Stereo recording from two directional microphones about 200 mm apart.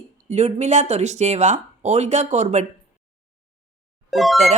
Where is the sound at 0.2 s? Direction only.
35° right (ahead or behind).